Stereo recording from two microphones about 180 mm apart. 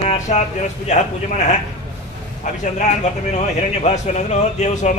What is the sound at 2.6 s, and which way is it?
Speech, 40° left (ahead or behind).